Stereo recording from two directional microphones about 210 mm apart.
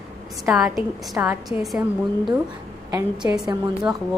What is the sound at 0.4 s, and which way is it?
A woman's voice, centre (ahead or behind).